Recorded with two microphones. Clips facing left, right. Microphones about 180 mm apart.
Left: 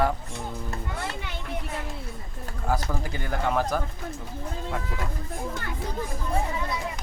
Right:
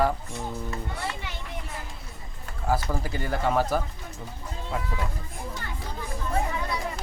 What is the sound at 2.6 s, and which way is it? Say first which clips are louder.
Speech: right 1 dB; 5° right (ahead or behind).